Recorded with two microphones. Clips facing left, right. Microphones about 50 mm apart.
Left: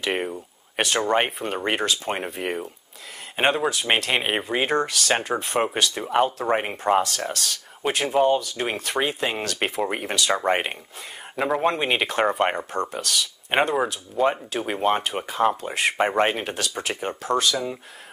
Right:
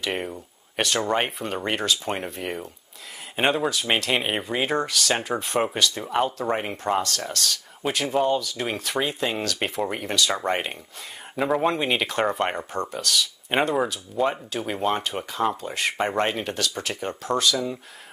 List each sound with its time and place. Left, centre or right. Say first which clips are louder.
0.0 s speech: left 3 dB; centre
6.5 s speech: left 4 dB; centre
8.7 s speech: left 1 dB; centre
11.3 s speech: even; centre
17.1 s speech: even; centre